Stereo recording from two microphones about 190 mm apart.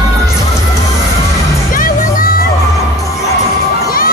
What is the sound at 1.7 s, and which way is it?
Music, 45° left (ahead or behind).